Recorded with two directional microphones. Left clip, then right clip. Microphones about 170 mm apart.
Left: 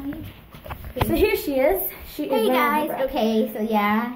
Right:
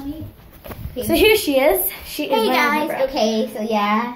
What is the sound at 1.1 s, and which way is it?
A child's voice, 15° right (ahead or behind).